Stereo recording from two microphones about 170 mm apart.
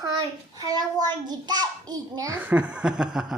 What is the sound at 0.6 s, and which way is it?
A child's voice, 20° right (ahead or behind).